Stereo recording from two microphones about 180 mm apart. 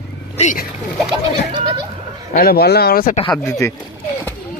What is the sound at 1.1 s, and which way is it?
Goat, 25° right (ahead or behind).